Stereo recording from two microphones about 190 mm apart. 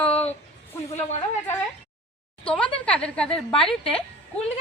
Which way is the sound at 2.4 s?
5° left (ahead or behind).